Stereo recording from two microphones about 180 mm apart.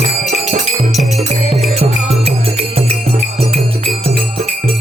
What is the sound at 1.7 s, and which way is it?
Music, 35° right (ahead or behind).